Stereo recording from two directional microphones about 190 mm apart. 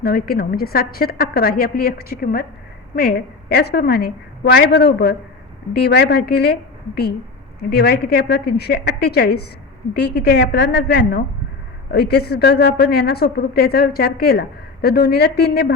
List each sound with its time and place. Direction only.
0.0 s a woman's voice: 50° left (ahead or behind)